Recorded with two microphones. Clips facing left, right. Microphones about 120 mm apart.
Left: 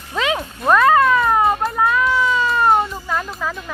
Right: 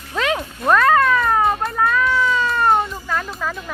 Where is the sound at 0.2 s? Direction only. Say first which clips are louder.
Even; 5° left (ahead or behind).